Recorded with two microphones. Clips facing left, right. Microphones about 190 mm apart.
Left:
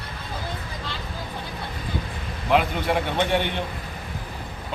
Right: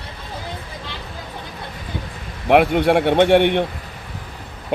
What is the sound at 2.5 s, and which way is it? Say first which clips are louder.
A man's voice: right 8 dB; 65° right (ahead or behind).